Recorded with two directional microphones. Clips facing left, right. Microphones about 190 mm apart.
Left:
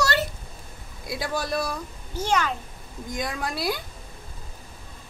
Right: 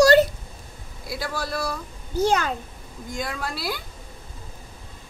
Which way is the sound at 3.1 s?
20° left (ahead or behind).